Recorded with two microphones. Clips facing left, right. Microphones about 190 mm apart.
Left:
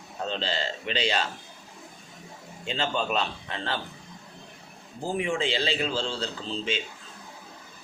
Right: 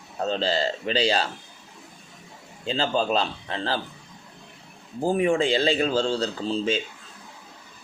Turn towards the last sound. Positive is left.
turn(degrees=-40)  # may be behind; listen again after turning